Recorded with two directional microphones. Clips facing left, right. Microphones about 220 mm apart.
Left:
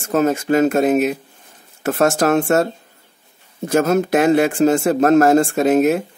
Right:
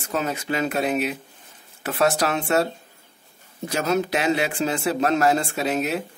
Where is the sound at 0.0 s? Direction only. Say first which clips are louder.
Left 10 dB; 45° left (ahead or behind).